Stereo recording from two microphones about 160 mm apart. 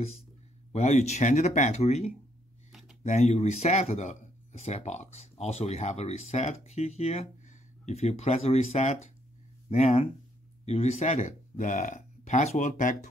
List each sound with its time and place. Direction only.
0.7 s speech: 45° left (ahead or behind)